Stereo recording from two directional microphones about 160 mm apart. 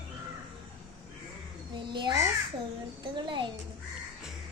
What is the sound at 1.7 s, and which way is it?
A child's voice, 30° right (ahead or behind).